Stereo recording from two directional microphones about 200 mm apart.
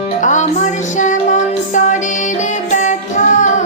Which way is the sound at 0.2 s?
40° left (ahead or behind).